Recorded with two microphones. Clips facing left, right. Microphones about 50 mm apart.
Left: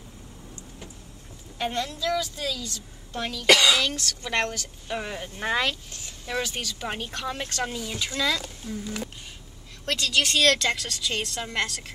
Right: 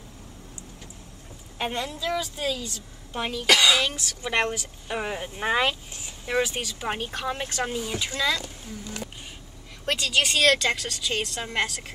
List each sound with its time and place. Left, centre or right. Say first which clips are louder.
1.7 s speech: left 2 dB; centre
3.4 s speech: left 1 dB; centre
9.8 s speech: right 1 dB; centre